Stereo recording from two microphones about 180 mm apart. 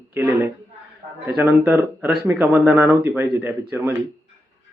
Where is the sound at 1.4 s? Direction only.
10° right (ahead or behind).